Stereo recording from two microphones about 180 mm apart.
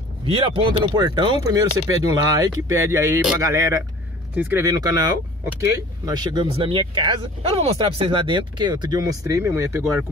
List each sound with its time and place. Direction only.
0.2 s a man's voice: 30° right (ahead or behind)